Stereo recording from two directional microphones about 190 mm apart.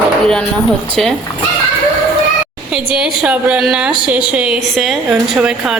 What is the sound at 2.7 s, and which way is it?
Speech, 5° right (ahead or behind).